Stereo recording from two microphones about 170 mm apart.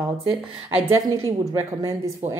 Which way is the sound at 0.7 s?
15° right (ahead or behind).